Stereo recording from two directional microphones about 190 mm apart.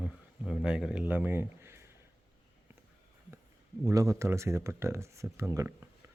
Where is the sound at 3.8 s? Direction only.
20° right (ahead or behind).